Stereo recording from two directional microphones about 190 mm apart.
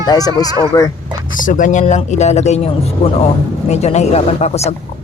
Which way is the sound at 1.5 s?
40° left (ahead or behind).